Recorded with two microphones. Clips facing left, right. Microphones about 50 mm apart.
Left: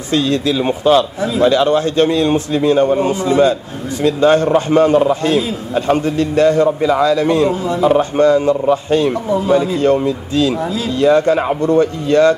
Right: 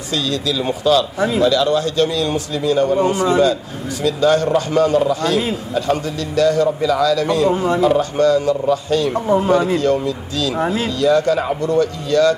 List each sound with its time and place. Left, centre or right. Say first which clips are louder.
0.1 s a man's voice: left 5 dB; left
3.1 s a man's voice: even; right
4.0 s a man's voice: left 3 dB; left
9.1 s speech: right 1 dB; right
9.8 s speech: left 4 dB; left